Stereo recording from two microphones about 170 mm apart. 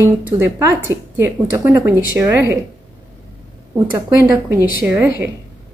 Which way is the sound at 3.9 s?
15° right (ahead or behind).